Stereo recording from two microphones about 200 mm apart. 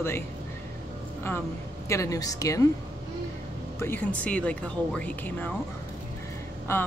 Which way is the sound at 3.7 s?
10° left (ahead or behind).